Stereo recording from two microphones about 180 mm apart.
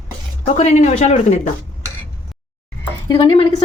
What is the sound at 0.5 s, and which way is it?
Speech, 40° left (ahead or behind).